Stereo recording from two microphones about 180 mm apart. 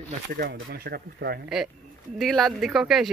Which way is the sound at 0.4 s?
60° right (ahead or behind).